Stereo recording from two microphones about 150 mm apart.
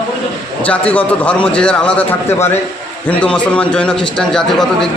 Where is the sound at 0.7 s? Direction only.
10° left (ahead or behind).